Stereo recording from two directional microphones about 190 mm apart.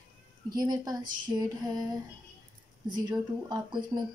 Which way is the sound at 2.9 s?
20° right (ahead or behind).